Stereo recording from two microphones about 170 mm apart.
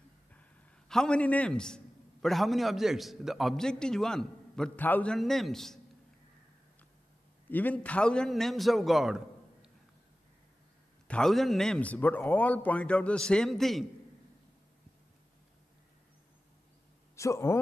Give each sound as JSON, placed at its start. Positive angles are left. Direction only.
{"t": 0.8, "sound": "a man's voice", "side_deg": 5}
{"t": 7.4, "sound": "a man's voice", "side_deg": 10}
{"t": 11.1, "sound": "speech", "side_deg": 5}
{"t": 17.1, "sound": "speech", "side_deg": 15}